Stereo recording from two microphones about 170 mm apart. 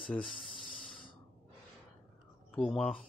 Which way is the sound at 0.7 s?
50° left (ahead or behind).